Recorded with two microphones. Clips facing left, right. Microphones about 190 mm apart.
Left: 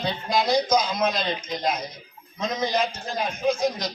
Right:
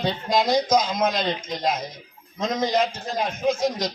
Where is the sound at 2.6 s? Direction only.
25° right (ahead or behind).